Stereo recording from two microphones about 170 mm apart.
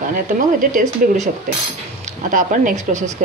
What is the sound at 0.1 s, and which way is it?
Speech, 50° right (ahead or behind).